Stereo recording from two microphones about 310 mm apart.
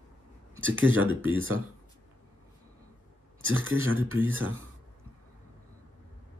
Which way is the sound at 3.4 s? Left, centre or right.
Right.